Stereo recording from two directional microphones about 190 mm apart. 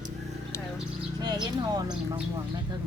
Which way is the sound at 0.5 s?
15° left (ahead or behind).